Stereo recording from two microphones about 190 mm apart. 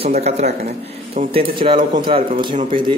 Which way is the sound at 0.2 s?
35° right (ahead or behind).